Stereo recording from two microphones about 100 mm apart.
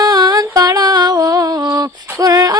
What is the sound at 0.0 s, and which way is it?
Music, 40° right (ahead or behind).